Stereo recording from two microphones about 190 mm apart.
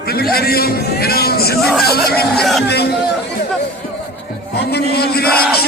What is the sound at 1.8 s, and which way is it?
Speech, 55° left (ahead or behind).